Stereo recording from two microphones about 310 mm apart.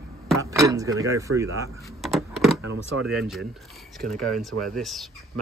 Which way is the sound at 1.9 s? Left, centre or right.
Centre.